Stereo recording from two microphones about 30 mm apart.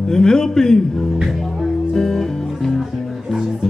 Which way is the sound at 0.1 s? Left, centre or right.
Left.